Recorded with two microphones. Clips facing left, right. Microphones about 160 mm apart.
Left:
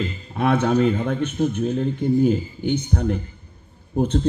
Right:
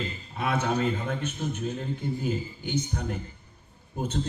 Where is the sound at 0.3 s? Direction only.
60° left (ahead or behind).